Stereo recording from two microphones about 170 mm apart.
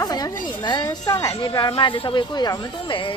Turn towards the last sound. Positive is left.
turn(degrees=30)  # may be behind; listen again after turning